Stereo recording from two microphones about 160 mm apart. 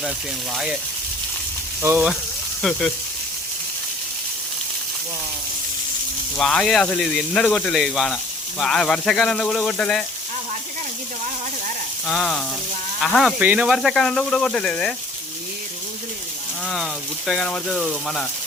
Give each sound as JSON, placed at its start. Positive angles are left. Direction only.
{"t": 0.5, "sound": "speech", "side_deg": -5}
{"t": 1.8, "sound": "speech", "side_deg": -15}
{"t": 2.6, "sound": "speech", "side_deg": 5}
{"t": 6.3, "sound": "speech", "side_deg": 5}
{"t": 12.0, "sound": "speech", "side_deg": 5}
{"t": 16.6, "sound": "speech", "side_deg": 0}